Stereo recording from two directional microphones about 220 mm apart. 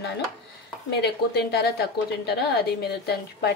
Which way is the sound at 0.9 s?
50° left (ahead or behind).